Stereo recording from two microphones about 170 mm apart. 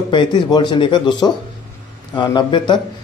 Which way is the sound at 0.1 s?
25° left (ahead or behind).